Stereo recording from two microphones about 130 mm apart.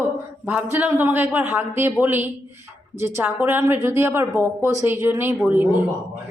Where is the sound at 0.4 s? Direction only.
10° right (ahead or behind).